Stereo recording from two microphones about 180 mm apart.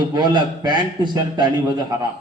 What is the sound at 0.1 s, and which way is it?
A man's voice, 25° right (ahead or behind).